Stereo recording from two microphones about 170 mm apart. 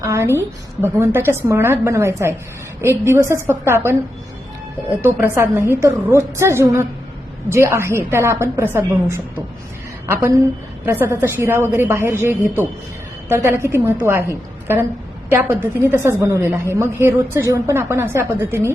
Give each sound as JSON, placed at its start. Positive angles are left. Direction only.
{"t": 0.0, "sound": "a woman's voice", "side_deg": -15}
{"t": 5.0, "sound": "a woman's voice", "side_deg": -10}